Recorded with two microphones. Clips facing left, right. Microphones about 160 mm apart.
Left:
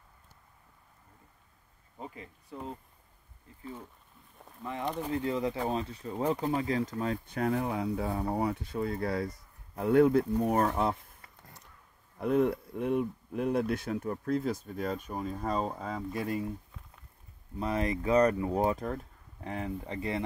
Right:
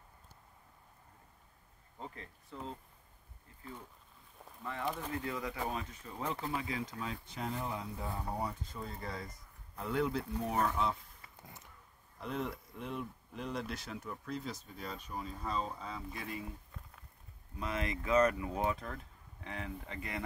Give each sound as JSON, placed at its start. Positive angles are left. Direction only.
{"t": 2.0, "sound": "speech", "side_deg": 10}
{"t": 5.0, "sound": "speech", "side_deg": 20}
{"t": 9.8, "sound": "speech", "side_deg": 55}
{"t": 11.4, "sound": "a sound", "side_deg": 0}
{"t": 12.2, "sound": "speech", "side_deg": 55}
{"t": 17.6, "sound": "speech", "side_deg": 35}